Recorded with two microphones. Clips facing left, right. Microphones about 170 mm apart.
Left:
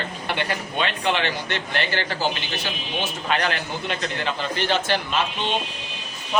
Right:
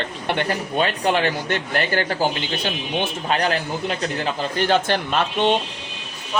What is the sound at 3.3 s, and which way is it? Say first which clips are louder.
A man's voice: right 3 dB; 35° right (ahead or behind).